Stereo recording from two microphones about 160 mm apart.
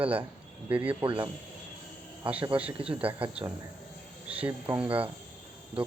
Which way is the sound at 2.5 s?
35° right (ahead or behind).